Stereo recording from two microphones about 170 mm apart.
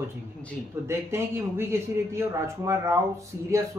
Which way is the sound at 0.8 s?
15° right (ahead or behind).